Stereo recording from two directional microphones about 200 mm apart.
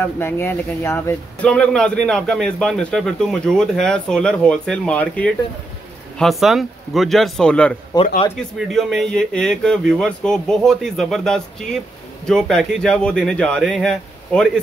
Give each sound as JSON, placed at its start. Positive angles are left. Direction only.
{"t": 0.0, "sound": "speech", "side_deg": 10}
{"t": 7.9, "sound": "speech", "side_deg": 20}
{"t": 8.4, "sound": "speech", "side_deg": 0}